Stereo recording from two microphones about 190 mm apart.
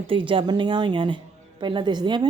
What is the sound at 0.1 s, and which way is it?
A woman's voice, 25° right (ahead or behind).